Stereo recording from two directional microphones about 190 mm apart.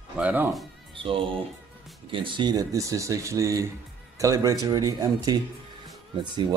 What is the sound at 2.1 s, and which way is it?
Speech, 25° right (ahead or behind).